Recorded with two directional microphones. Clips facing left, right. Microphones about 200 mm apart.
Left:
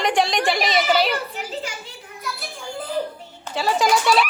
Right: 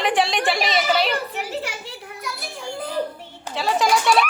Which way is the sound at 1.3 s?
65° right (ahead or behind).